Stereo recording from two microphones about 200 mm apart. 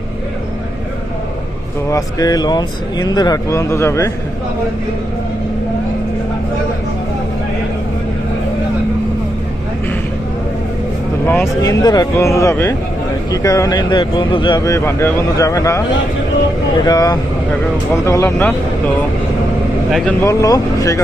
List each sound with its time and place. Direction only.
1.9 s speech: 20° left (ahead or behind)
11.3 s speech: 15° left (ahead or behind)
20.2 s speech: 15° left (ahead or behind)